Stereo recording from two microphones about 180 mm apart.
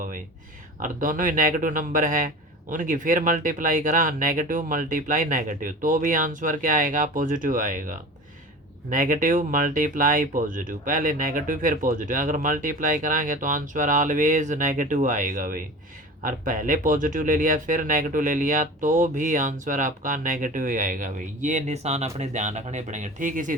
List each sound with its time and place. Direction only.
0.8 s speech: 50° right (ahead or behind)